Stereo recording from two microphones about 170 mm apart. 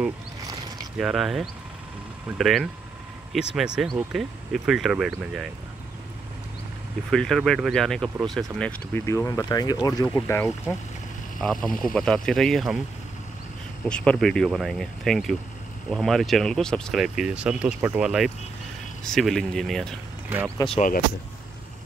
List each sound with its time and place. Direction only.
0.9 s speech: centre (ahead or behind)
7.1 s speech: 5° left (ahead or behind)
11.3 s speech: centre (ahead or behind)
13.8 s speech: 5° left (ahead or behind)
20.6 s speech: 25° left (ahead or behind)